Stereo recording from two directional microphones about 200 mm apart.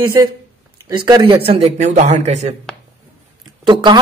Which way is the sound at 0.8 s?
20° right (ahead or behind).